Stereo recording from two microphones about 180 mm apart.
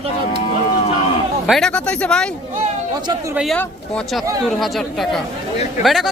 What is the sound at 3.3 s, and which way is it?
Speech, 5° right (ahead or behind).